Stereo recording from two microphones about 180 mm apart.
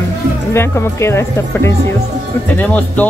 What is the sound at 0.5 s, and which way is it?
Speech, 15° left (ahead or behind).